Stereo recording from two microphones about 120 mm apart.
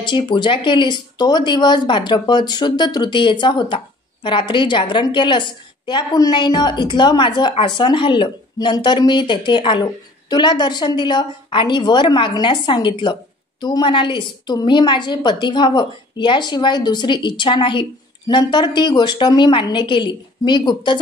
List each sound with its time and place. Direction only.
0.0 s speech: 40° left (ahead or behind)